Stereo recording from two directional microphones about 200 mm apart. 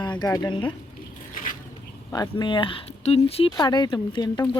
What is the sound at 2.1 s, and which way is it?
Speech, 20° left (ahead or behind).